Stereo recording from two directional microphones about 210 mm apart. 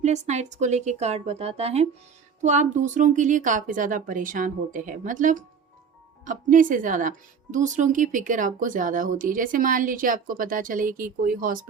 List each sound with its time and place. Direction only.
0.0 s speech: 35° right (ahead or behind)